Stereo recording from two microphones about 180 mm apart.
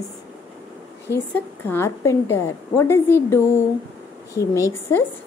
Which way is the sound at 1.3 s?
10° left (ahead or behind).